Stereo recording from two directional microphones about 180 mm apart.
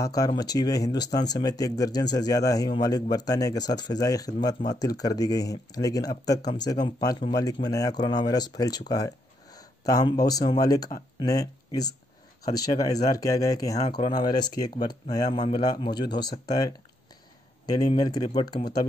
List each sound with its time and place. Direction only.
0.0 s speech: 20° left (ahead or behind)